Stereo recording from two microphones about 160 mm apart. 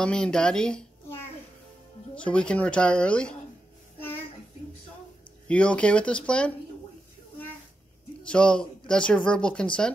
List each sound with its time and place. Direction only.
0.0 s speech: 5° left (ahead or behind)
5.5 s speech: 5° left (ahead or behind)
8.3 s speech: 5° left (ahead or behind)